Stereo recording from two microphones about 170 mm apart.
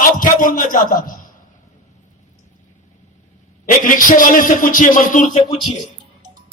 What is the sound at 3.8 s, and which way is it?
Speech, 55° left (ahead or behind).